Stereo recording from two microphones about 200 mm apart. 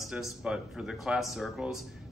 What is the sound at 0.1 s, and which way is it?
A man's voice, 5° right (ahead or behind).